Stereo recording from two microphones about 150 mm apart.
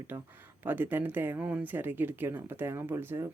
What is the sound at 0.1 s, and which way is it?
Speech, 10° right (ahead or behind).